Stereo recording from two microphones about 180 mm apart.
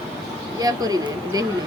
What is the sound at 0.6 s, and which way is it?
Speech, 20° right (ahead or behind).